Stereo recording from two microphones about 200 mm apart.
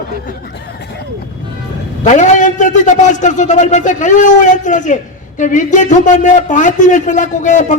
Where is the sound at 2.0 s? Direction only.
35° left (ahead or behind).